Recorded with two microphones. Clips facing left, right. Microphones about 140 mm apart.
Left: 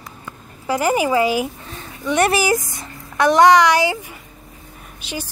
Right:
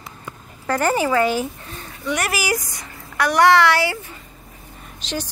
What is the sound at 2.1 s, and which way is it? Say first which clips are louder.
Speech: left 7 dB; 25° left (ahead or behind).